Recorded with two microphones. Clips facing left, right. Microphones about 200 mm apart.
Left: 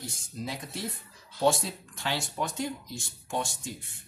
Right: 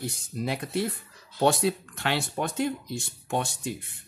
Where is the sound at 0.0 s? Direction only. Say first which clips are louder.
Right 6 dB; 65° right (ahead or behind).